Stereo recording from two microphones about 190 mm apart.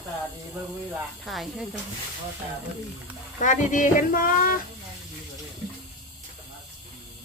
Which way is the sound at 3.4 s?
40° left (ahead or behind).